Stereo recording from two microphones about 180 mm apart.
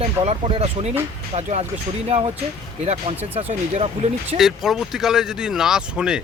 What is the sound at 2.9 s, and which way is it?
Speech, 35° right (ahead or behind).